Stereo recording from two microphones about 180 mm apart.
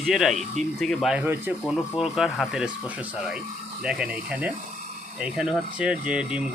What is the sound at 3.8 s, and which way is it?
Speech, 5° right (ahead or behind).